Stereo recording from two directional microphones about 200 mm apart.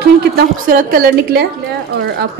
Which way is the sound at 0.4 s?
45° right (ahead or behind).